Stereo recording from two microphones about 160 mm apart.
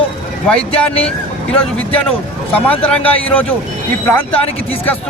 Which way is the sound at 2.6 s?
10° left (ahead or behind).